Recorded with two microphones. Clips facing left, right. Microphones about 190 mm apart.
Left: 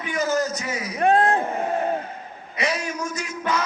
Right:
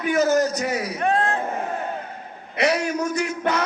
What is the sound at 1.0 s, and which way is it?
Speech, 35° left (ahead or behind).